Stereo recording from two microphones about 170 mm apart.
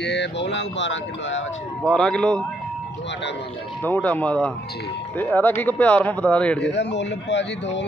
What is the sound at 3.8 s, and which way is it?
Speech, 10° left (ahead or behind).